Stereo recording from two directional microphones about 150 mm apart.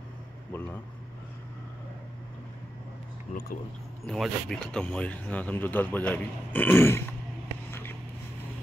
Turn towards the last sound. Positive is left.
turn(degrees=15)  # may be behind; listen again after turning